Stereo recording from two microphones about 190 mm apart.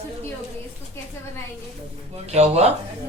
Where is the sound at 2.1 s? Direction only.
35° right (ahead or behind).